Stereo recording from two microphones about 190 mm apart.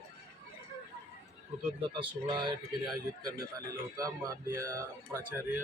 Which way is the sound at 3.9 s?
15° right (ahead or behind).